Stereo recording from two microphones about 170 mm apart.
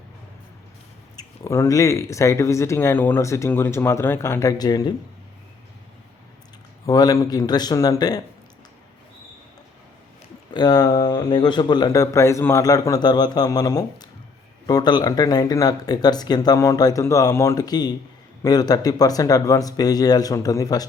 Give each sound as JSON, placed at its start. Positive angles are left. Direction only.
{"t": 1.1, "sound": "speech", "side_deg": 20}
{"t": 6.8, "sound": "speech", "side_deg": 20}
{"t": 10.5, "sound": "speech", "side_deg": 25}